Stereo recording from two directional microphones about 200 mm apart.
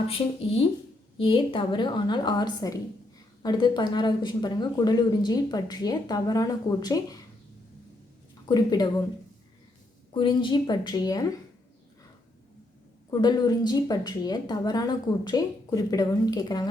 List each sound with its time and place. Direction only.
0.1 s a woman's voice: 30° left (ahead or behind)
8.4 s a woman's voice: 20° left (ahead or behind)
10.2 s a woman's voice: 25° left (ahead or behind)
13.1 s a woman's voice: 20° left (ahead or behind)